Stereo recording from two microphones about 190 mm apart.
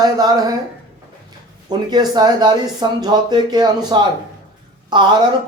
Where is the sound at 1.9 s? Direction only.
20° right (ahead or behind).